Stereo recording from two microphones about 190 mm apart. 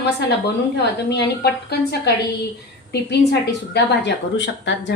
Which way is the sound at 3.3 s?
65° left (ahead or behind).